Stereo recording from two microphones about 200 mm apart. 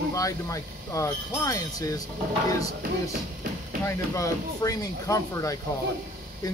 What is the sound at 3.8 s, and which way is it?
Speech, 15° left (ahead or behind).